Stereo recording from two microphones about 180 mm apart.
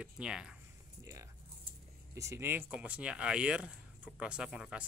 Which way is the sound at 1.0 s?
15° right (ahead or behind).